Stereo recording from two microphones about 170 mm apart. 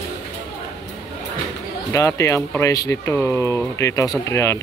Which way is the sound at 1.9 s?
15° left (ahead or behind).